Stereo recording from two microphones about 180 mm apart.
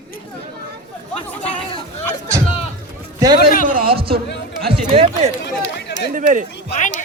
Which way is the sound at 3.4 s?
55° left (ahead or behind).